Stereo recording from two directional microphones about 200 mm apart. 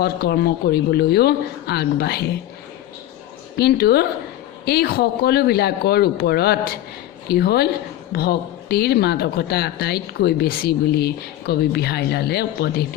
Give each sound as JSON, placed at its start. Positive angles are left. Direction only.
{"t": 0.0, "sound": "a woman's voice", "side_deg": 55}
{"t": 3.6, "sound": "a woman's voice", "side_deg": 50}